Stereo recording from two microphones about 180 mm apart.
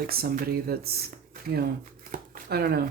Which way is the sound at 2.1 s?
55° right (ahead or behind).